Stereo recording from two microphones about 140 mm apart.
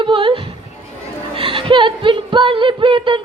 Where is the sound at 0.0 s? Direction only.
35° right (ahead or behind).